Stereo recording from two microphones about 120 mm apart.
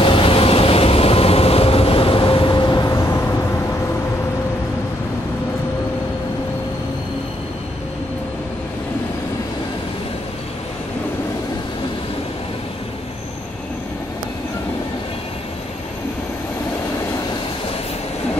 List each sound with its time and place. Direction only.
0.0 s vehicle: 50° left (ahead or behind); by 3.3 s 25° left (ahead or behind)